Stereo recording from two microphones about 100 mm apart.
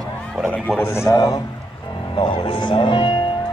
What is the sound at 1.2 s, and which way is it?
Speech, 35° left (ahead or behind).